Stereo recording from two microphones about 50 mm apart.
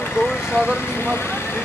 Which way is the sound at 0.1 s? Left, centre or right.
Left.